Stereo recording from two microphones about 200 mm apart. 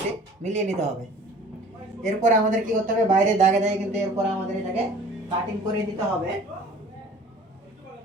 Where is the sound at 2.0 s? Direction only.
40° right (ahead or behind).